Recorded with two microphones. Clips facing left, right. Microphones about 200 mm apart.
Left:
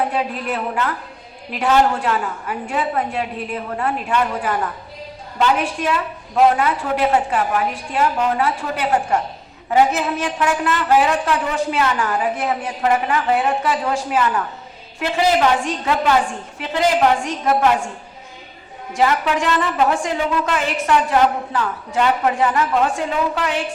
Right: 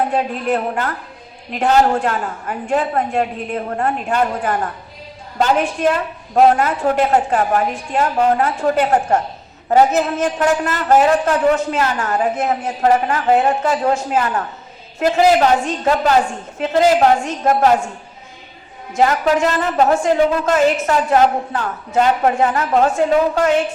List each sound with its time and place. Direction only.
0.1 s a woman's voice: 45° right (ahead or behind)
17.4 s a woman's voice: 40° right (ahead or behind)
18.9 s a woman's voice: 40° right (ahead or behind)